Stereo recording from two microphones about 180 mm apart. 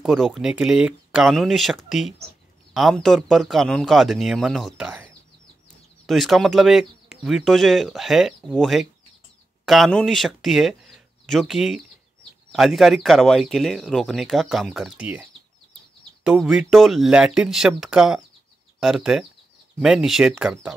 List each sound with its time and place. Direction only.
0.0 s speech: centre (ahead or behind)
16.3 s speech: 5° right (ahead or behind)